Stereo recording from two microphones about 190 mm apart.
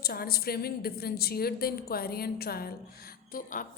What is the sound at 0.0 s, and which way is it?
A woman's voice, 55° left (ahead or behind).